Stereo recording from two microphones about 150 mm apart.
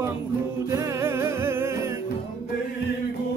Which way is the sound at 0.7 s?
15° right (ahead or behind).